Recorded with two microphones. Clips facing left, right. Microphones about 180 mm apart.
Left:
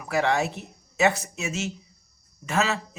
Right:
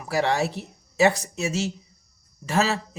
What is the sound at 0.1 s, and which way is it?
Speech, 35° right (ahead or behind).